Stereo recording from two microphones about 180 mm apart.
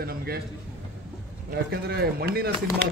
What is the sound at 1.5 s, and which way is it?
Speech, 60° right (ahead or behind).